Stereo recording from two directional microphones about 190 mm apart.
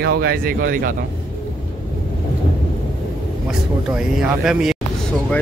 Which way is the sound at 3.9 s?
5° right (ahead or behind).